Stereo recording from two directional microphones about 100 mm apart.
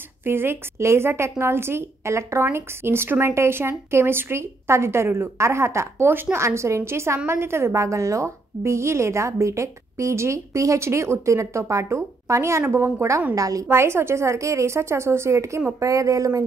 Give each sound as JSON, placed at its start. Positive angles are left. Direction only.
{"t": 0.2, "sound": "a woman's voice", "side_deg": -25}